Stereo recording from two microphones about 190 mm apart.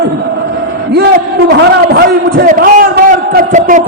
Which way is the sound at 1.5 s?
60° right (ahead or behind).